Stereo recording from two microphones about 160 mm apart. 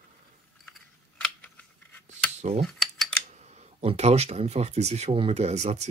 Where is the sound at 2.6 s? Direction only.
Centre (ahead or behind).